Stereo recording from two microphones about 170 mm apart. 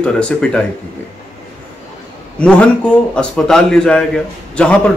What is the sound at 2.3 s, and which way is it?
A man's voice, 5° left (ahead or behind).